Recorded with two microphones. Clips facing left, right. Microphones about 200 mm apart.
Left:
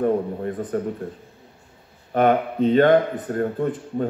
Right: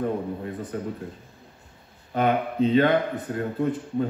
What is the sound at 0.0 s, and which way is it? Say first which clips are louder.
Speech: left 6 dB; 45° left (ahead or behind).